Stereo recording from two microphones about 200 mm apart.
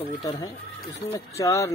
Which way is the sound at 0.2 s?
20° left (ahead or behind).